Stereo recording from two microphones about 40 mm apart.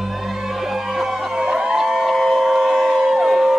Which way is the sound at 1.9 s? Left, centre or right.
Centre.